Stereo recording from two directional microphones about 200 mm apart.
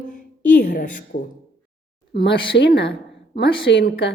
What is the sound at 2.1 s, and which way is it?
Speech, 55° left (ahead or behind).